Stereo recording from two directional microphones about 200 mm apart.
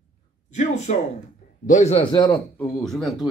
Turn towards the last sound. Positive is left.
turn(degrees=0)  # may be behind; listen again after turning